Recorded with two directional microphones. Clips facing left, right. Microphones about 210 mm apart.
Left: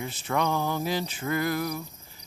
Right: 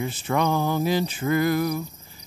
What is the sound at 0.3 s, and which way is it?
Mantra, 15° right (ahead or behind).